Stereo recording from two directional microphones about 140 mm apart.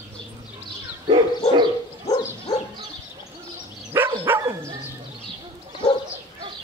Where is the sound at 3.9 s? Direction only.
15° right (ahead or behind).